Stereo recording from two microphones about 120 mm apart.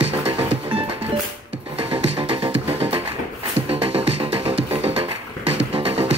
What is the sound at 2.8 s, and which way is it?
Music, 55° right (ahead or behind).